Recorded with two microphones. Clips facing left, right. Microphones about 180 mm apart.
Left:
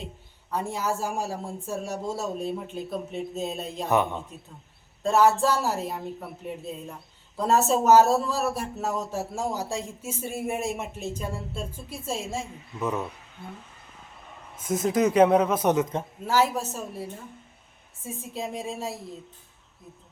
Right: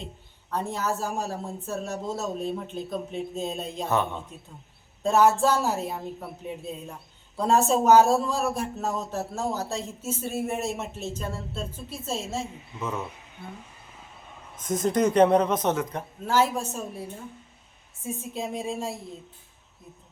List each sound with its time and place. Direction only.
0.5 s speech: 10° left (ahead or behind)
3.8 s speech: 15° left (ahead or behind)
5.0 s speech: centre (ahead or behind); by 13.1 s 15° left (ahead or behind)
14.5 s speech: 5° left (ahead or behind); by 16.0 s 20° left (ahead or behind)
16.2 s speech: 5° left (ahead or behind)